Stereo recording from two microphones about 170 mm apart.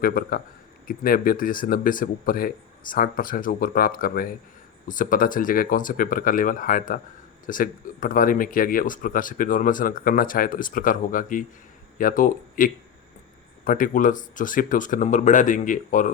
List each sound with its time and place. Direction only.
0.0 s speech: 60° left (ahead or behind)